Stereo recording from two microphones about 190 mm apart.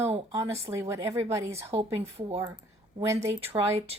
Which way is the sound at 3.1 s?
15° right (ahead or behind).